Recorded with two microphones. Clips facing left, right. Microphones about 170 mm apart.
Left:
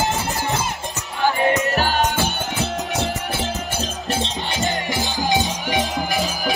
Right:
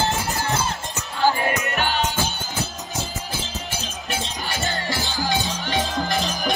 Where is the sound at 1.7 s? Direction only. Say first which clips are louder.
Left 4 dB; 40° left (ahead or behind).